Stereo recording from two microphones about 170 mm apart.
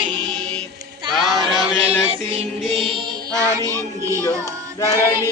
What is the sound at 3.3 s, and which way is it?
Child singing, 20° right (ahead or behind).